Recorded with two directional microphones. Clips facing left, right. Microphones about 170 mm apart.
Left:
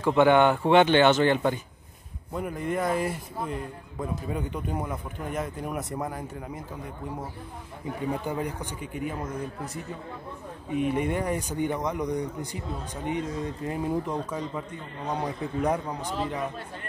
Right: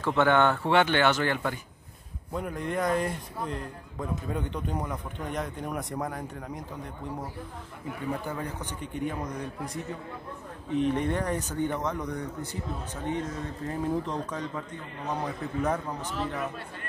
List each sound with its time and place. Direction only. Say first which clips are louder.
0.0 s speech: left 4 dB; 15° left (ahead or behind)
2.3 s speech: left 2 dB; 5° left (ahead or behind)
8.1 s speech: left 3 dB; 15° left (ahead or behind)
10.7 s speech: even; 10° left (ahead or behind)